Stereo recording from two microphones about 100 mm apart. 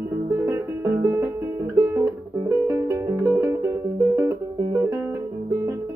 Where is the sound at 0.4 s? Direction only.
30° right (ahead or behind).